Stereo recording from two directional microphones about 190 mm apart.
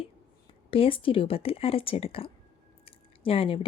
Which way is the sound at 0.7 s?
30° left (ahead or behind).